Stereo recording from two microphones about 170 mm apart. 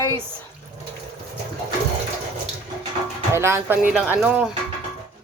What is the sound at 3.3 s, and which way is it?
Speech, 15° right (ahead or behind).